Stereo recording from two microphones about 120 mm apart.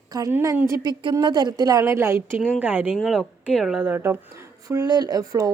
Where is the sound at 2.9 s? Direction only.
Centre (ahead or behind).